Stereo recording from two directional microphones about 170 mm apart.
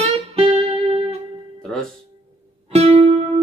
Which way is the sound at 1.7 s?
5° left (ahead or behind).